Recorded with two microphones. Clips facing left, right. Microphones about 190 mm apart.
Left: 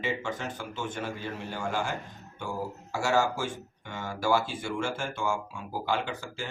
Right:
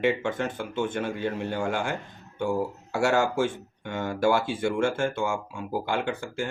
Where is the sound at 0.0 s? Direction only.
55° right (ahead or behind).